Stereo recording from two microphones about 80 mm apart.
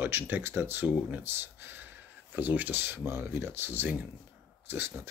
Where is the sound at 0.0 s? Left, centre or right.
Right.